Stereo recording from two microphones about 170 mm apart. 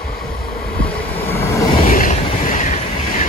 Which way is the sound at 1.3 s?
15° left (ahead or behind).